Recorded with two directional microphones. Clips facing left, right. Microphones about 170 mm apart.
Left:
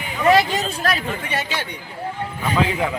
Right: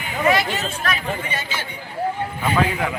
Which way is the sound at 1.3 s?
70° left (ahead or behind).